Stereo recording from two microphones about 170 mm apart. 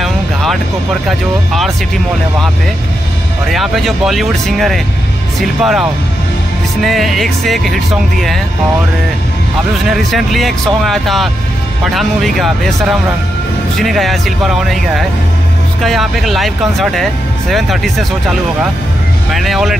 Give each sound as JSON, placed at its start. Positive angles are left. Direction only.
{"t": 0.0, "sound": "music", "side_deg": 0}
{"t": 1.0, "sound": "speech", "side_deg": 0}
{"t": 3.4, "sound": "speech", "side_deg": 0}
{"t": 9.8, "sound": "speech", "side_deg": 0}
{"t": 19.3, "sound": "speech", "side_deg": 0}